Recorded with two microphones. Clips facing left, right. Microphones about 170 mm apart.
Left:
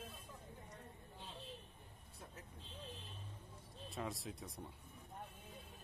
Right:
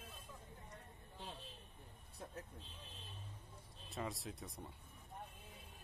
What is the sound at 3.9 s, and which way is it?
Speech, centre (ahead or behind).